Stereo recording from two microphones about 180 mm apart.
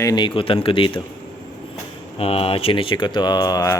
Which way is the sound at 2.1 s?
35° left (ahead or behind).